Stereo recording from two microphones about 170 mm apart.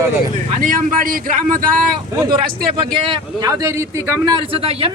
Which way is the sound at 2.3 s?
30° right (ahead or behind).